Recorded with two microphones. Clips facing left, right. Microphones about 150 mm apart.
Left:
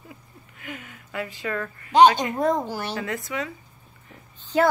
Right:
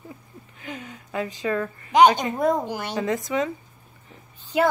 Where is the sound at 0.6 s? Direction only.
20° right (ahead or behind).